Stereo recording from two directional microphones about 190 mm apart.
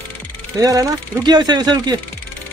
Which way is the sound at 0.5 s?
20° right (ahead or behind).